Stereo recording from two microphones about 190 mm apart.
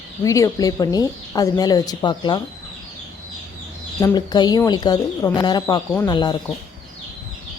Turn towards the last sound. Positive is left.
turn(degrees=20)  # may be behind; listen again after turning